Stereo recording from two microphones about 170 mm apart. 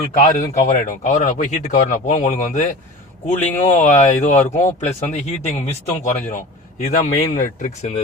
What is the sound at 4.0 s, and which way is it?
Speech, 45° left (ahead or behind).